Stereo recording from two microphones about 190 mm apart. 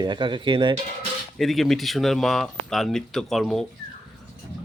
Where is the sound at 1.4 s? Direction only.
Centre (ahead or behind).